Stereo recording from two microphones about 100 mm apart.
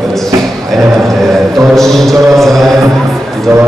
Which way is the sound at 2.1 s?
30° right (ahead or behind).